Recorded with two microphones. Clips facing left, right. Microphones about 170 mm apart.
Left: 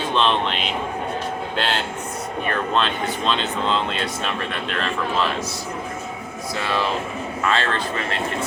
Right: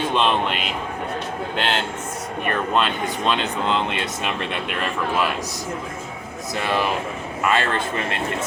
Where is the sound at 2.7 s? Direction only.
10° right (ahead or behind).